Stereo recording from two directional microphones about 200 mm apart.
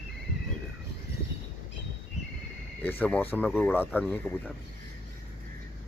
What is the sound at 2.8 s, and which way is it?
Speech, 10° left (ahead or behind).